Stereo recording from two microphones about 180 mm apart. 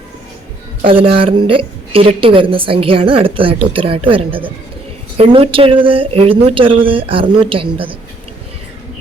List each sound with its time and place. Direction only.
0.9 s a woman's voice: 30° right (ahead or behind)